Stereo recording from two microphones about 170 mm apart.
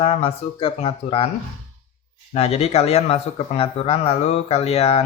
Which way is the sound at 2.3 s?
35° left (ahead or behind).